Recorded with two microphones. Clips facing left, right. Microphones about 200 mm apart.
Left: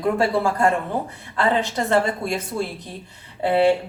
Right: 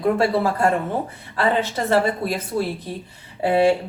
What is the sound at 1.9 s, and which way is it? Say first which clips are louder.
Speech: right 2 dB; 5° right (ahead or behind).